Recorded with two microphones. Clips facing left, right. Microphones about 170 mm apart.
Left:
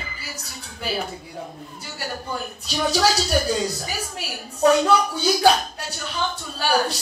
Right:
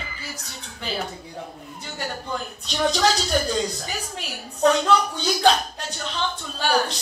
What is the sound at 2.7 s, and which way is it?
Speech, 10° left (ahead or behind).